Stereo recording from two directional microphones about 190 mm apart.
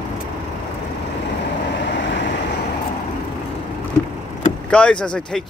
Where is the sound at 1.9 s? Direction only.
70° left (ahead or behind).